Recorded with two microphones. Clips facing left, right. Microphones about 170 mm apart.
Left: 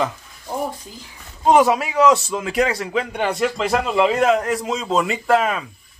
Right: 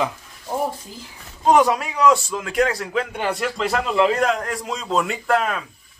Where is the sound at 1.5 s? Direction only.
5° left (ahead or behind).